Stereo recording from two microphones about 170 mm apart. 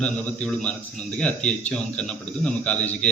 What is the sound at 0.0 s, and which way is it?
A man's voice, 5° left (ahead or behind).